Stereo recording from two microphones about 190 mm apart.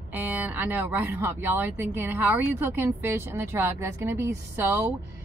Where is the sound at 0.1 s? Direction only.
10° right (ahead or behind).